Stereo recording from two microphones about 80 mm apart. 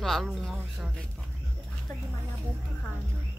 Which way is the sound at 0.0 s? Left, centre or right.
Centre.